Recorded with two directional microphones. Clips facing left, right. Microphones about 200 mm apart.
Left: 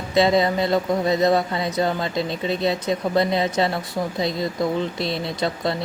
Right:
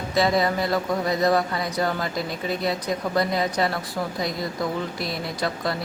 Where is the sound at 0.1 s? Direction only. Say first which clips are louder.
Left 4 dB; 25° left (ahead or behind).